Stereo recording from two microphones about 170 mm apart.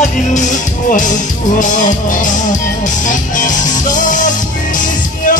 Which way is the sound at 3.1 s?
50° left (ahead or behind).